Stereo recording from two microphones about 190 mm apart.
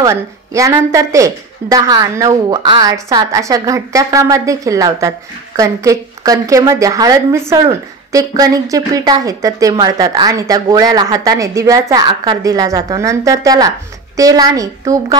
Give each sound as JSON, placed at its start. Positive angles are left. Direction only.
{"t": 0.0, "sound": "a woman's voice", "side_deg": -15}